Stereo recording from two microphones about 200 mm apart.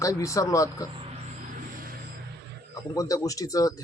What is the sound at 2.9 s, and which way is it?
Speech, 15° left (ahead or behind).